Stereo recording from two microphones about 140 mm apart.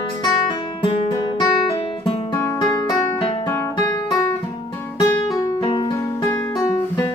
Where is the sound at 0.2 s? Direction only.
35° left (ahead or behind).